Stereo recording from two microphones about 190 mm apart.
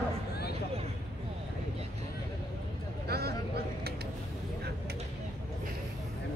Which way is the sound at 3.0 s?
55° right (ahead or behind).